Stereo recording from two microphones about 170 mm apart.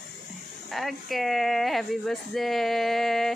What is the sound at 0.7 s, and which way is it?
A woman's voice, centre (ahead or behind).